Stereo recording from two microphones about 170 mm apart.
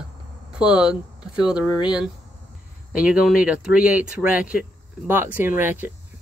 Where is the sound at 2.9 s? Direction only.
5° right (ahead or behind).